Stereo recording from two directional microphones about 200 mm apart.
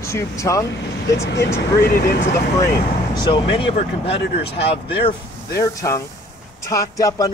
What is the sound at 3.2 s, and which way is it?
Speech, 25° left (ahead or behind).